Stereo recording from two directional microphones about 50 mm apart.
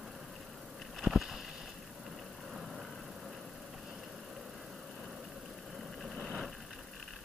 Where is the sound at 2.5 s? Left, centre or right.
Centre.